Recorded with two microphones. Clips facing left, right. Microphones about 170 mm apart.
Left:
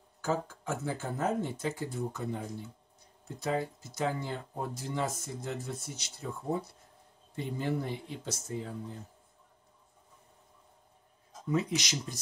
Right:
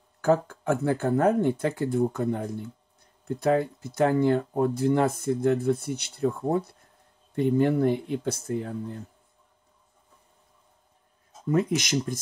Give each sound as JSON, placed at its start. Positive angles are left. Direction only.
{"t": 0.2, "sound": "speech", "side_deg": -60}
{"t": 11.5, "sound": "speech", "side_deg": -50}